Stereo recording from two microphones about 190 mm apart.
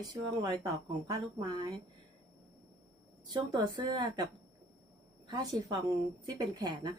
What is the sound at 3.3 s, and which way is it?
Speech, 25° right (ahead or behind).